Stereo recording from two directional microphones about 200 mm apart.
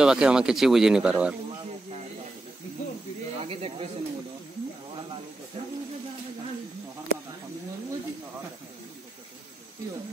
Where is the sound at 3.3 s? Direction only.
30° right (ahead or behind).